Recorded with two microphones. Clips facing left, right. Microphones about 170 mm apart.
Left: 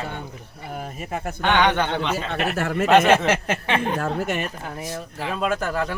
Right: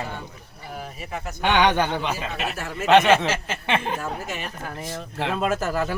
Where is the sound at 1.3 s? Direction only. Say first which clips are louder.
Even; 10° right (ahead or behind).